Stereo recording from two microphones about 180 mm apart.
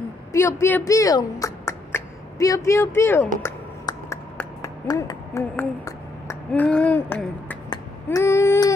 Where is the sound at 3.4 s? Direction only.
15° left (ahead or behind).